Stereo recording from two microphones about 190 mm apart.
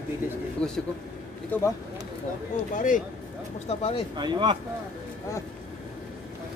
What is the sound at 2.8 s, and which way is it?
Speech, 45° left (ahead or behind).